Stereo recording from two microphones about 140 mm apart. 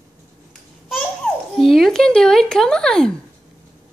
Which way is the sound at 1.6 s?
Centre (ahead or behind).